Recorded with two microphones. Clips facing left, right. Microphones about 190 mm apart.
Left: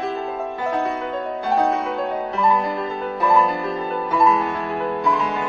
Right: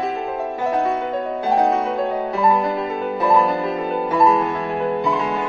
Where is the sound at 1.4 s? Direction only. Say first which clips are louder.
Right 2 dB; centre (ahead or behind).